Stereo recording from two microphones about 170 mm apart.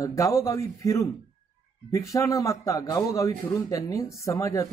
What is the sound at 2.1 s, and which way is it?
Speech, 20° left (ahead or behind).